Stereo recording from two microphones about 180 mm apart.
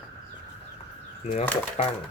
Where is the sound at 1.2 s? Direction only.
35° left (ahead or behind).